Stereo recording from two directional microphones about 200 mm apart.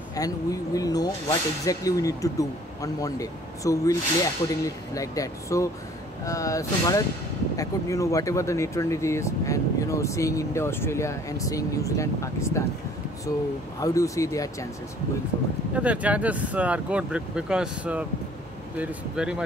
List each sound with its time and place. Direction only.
0.1 s speech: 15° left (ahead or behind)
13.7 s speech: 15° left (ahead or behind)
15.7 s speech: 5° right (ahead or behind)